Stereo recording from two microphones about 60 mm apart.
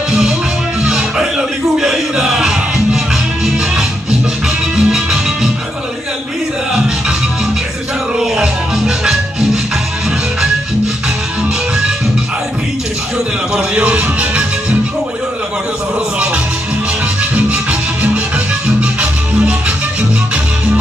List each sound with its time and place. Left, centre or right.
0.8 s music: centre
4.7 s music: centre
8.2 s music: centre
13.5 s music: centre
17.2 s music: right